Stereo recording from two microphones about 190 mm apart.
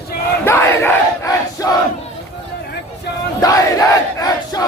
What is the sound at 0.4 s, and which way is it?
Crowd, 10° left (ahead or behind).